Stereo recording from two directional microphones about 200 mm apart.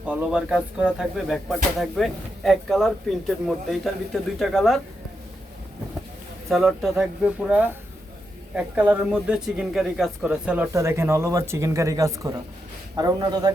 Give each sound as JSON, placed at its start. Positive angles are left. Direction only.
{"t": 0.0, "sound": "speech", "side_deg": -5}
{"t": 6.5, "sound": "speech", "side_deg": 0}